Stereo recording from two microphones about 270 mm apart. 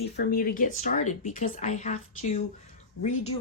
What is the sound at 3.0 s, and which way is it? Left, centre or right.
Speech, left.